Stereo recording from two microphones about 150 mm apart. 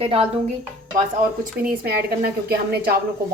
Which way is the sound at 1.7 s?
85° right.